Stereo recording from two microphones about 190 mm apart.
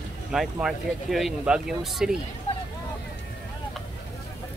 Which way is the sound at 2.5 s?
30° left (ahead or behind).